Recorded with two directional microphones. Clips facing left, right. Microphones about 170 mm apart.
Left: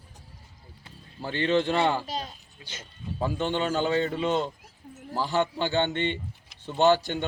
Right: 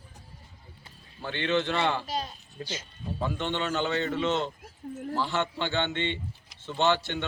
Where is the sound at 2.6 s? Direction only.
45° right (ahead or behind).